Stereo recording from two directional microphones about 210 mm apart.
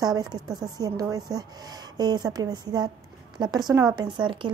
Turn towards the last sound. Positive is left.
turn(degrees=-25)  # may be behind; listen again after turning